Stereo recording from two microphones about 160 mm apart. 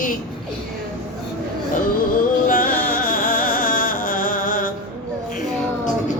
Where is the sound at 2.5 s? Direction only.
60° left (ahead or behind).